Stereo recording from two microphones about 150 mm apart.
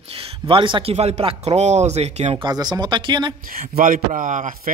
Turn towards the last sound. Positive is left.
turn(degrees=-55)  # may be behind; listen again after turning